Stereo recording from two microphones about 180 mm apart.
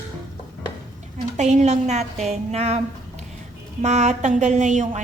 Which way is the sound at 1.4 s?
40° right (ahead or behind).